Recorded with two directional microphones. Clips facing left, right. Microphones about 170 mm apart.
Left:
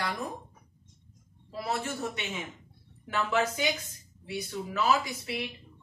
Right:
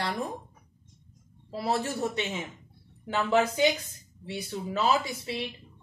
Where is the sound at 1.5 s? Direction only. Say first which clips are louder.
Right 4 dB; 30° right (ahead or behind).